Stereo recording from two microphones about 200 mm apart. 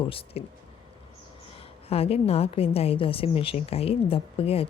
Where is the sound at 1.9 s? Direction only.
30° left (ahead or behind).